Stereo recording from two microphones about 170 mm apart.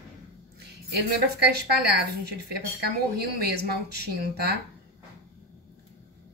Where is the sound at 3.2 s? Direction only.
70° right (ahead or behind).